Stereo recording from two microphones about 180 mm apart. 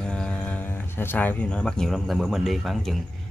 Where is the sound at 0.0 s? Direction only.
5° left (ahead or behind).